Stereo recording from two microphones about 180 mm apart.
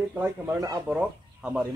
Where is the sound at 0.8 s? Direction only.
5° right (ahead or behind).